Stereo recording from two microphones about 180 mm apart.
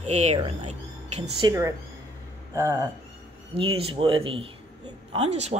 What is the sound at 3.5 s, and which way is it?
Speech, 30° right (ahead or behind).